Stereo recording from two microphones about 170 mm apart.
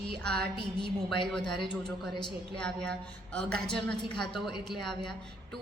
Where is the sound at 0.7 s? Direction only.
30° left (ahead or behind).